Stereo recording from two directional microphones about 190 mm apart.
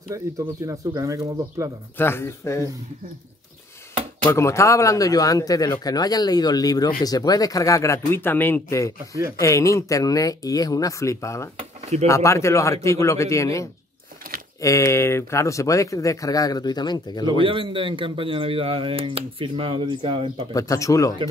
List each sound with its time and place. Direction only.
0.1 s speech: 20° right (ahead or behind)
2.0 s speech: 10° left (ahead or behind)
4.3 s speech: 15° left (ahead or behind)
17.5 s speech: 25° right (ahead or behind)
20.5 s speech: 15° left (ahead or behind)